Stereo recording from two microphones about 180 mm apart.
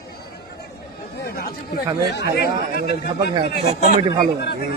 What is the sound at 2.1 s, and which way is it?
Speech, 65° left (ahead or behind).